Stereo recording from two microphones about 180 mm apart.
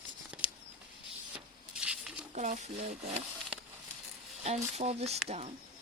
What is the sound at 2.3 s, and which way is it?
Speech, 40° right (ahead or behind).